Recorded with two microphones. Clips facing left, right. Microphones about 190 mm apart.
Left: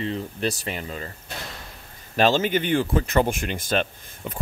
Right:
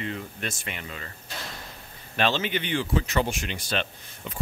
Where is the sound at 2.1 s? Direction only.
40° left (ahead or behind).